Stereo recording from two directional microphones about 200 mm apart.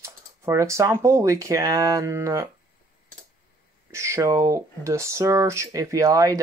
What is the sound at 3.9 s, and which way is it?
Speech, 15° right (ahead or behind).